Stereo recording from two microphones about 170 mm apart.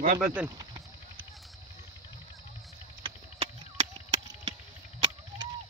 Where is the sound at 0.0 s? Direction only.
55° right (ahead or behind).